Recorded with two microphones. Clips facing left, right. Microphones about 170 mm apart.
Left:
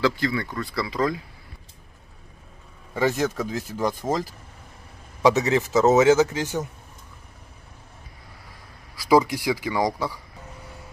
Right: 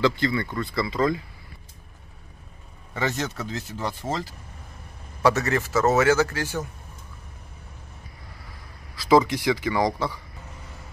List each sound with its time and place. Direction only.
0.0 s speech: 5° left (ahead or behind)
2.9 s a man's voice: 10° left (ahead or behind)
5.2 s a man's voice: 15° left (ahead or behind)
8.9 s a sound: 10° left (ahead or behind)
9.2 s a man's voice: 10° left (ahead or behind)